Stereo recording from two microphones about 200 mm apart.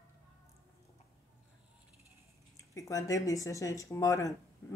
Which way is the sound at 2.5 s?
15° left (ahead or behind).